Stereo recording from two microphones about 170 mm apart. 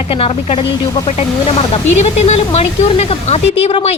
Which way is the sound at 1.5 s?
40° left (ahead or behind).